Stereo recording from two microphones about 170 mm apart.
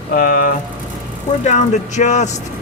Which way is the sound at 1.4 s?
45° left (ahead or behind).